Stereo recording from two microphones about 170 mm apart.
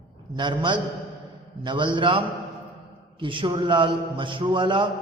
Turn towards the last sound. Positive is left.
turn(degrees=-30)  # may be behind; listen again after turning